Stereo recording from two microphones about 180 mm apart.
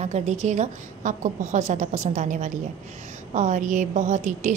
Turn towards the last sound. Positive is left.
turn(degrees=-40)  # may be behind; listen again after turning